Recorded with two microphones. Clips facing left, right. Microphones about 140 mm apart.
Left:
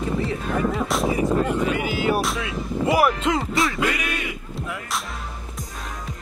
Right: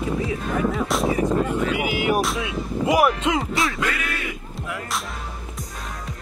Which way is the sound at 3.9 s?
15° left (ahead or behind).